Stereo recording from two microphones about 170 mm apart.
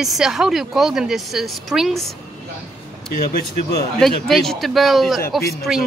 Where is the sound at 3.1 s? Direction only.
60° left (ahead or behind).